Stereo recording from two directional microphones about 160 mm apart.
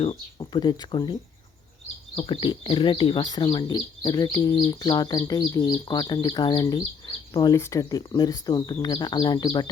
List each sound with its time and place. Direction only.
0.0 s speech: 30° left (ahead or behind)
2.1 s speech: 35° left (ahead or behind)